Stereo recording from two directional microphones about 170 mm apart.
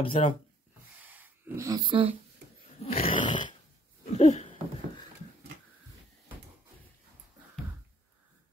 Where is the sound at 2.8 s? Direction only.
35° left (ahead or behind).